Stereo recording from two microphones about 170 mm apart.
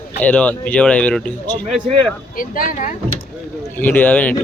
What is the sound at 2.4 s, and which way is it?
Speech, 55° left (ahead or behind).